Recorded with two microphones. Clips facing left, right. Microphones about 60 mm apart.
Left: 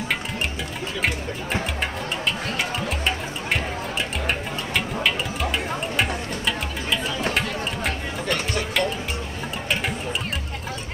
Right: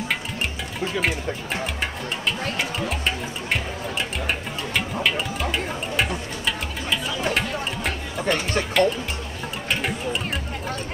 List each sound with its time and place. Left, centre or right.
1.0 s speech: centre
2.5 s music: centre